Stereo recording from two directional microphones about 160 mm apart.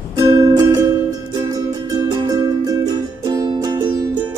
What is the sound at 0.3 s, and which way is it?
Music, 25° right (ahead or behind).